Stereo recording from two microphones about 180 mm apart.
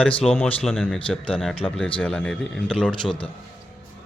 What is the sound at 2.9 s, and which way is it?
Speech, 25° left (ahead or behind).